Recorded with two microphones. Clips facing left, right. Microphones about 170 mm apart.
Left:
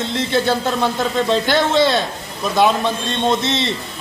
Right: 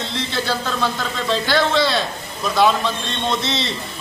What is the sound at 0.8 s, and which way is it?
A man's voice, 20° left (ahead or behind).